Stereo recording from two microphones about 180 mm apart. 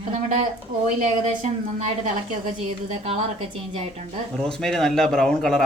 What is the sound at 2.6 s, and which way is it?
A woman's voice, 35° right (ahead or behind).